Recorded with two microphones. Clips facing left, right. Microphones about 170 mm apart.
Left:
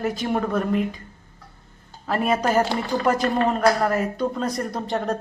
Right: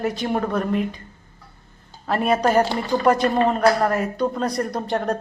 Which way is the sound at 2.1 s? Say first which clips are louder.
Right 2 dB; centre (ahead or behind).